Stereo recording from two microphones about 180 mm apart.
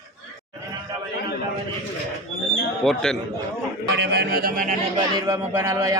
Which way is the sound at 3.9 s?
70° right (ahead or behind).